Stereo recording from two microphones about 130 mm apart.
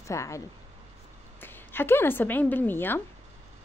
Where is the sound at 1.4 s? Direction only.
15° left (ahead or behind).